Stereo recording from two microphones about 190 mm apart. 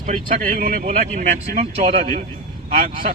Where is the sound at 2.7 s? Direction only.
45° right (ahead or behind).